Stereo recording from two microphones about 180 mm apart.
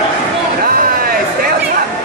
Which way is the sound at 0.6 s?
55° right (ahead or behind).